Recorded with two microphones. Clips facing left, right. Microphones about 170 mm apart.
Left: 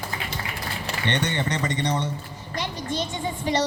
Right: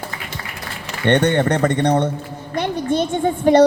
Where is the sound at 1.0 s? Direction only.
55° right (ahead or behind).